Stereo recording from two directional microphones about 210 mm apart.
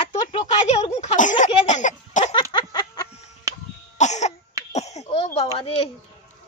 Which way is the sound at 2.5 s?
20° left (ahead or behind).